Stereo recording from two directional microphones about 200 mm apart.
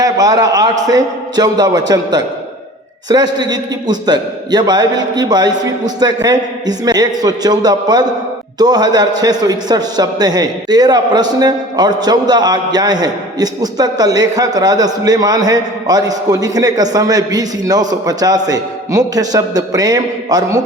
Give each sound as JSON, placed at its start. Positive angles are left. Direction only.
{"t": 0.0, "sound": "a man's voice", "side_deg": -20}
{"t": 3.3, "sound": "a man's voice", "side_deg": -20}